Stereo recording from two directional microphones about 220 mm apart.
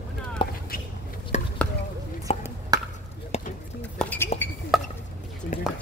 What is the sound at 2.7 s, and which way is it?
Chop, 15° right (ahead or behind).